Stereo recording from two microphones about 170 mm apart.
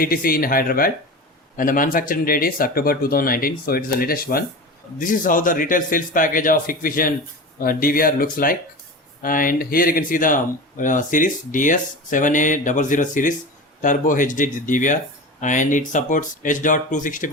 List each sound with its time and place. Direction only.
0.0 s speech: 55° left (ahead or behind)